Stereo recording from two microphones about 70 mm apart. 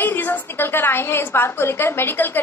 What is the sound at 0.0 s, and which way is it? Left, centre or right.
A woman's voice, left.